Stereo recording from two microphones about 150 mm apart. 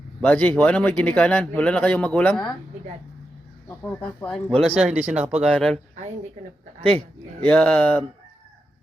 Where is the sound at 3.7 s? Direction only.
10° left (ahead or behind).